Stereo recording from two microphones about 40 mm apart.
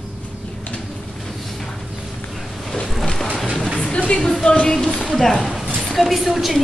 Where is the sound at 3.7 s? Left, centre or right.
Left.